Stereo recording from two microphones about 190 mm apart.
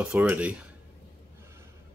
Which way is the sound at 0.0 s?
5° right (ahead or behind).